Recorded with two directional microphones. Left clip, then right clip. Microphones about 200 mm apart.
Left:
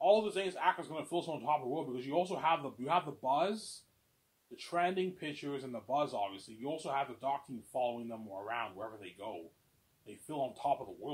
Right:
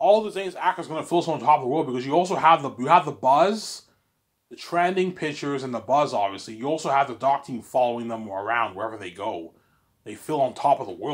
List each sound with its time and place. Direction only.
0.0 s speech: 25° right (ahead or behind)